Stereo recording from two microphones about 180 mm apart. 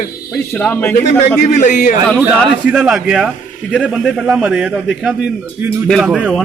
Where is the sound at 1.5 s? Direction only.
40° left (ahead or behind).